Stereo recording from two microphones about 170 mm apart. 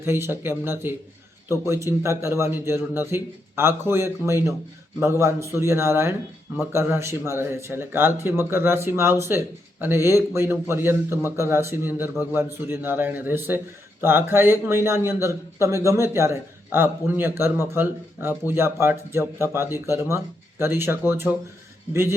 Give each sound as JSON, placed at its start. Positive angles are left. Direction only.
{"t": 0.0, "sound": "a man's voice", "side_deg": -15}